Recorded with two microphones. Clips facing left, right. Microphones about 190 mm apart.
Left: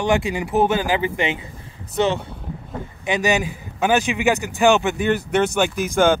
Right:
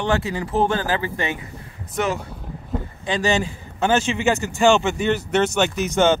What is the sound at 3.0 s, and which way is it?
Speech, 15° left (ahead or behind).